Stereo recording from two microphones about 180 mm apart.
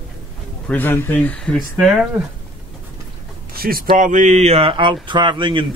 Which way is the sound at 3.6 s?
55° right (ahead or behind).